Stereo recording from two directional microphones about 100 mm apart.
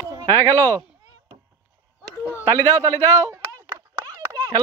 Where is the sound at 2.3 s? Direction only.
25° left (ahead or behind).